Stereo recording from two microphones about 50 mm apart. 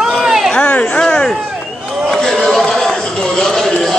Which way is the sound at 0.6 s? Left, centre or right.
Left.